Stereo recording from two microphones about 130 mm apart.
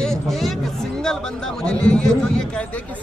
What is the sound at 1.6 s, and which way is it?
Speech, 5° left (ahead or behind).